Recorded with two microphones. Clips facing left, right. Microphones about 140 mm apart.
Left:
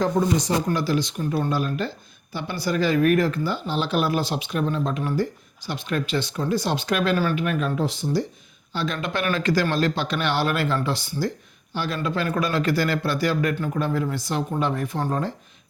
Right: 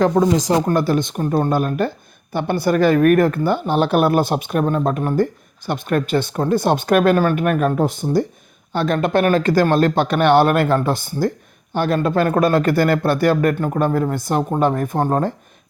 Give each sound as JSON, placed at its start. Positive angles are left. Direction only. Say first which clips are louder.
{"t": 0.0, "sound": "speech", "louder": "right 6 dB", "side_deg": -90}
{"t": 0.6, "sound": "speech", "louder": "right 6 dB", "side_deg": -50}